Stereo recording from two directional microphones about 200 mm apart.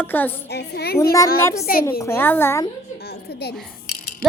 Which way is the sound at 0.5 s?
55° left (ahead or behind).